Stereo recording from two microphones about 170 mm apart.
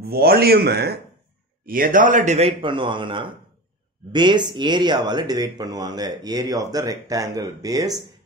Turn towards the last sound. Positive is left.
turn(degrees=-20)  # may be behind; listen again after turning